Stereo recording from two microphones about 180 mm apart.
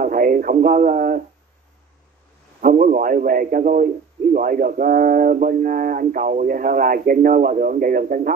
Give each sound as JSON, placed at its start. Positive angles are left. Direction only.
{"t": 0.0, "sound": "speech", "side_deg": -50}
{"t": 2.6, "sound": "a man's voice", "side_deg": -45}